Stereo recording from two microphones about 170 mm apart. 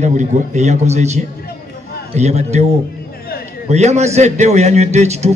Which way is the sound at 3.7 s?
40° right (ahead or behind).